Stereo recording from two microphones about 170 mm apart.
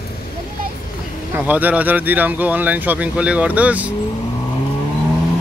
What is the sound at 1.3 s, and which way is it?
Speech, 10° right (ahead or behind).